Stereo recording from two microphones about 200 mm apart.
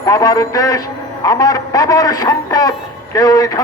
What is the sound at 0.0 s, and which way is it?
A man's voice, 15° left (ahead or behind).